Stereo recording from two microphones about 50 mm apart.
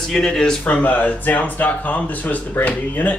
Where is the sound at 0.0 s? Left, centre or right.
Centre.